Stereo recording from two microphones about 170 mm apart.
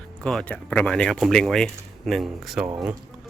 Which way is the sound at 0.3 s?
5° left (ahead or behind).